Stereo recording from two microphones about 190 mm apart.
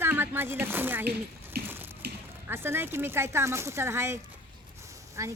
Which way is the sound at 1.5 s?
55° right (ahead or behind).